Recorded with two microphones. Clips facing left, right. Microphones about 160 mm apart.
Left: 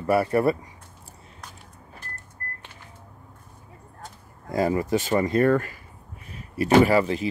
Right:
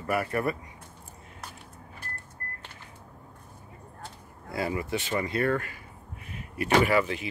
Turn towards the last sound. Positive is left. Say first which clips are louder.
# left 6 dB
turn(degrees=35)  # may be behind; listen again after turning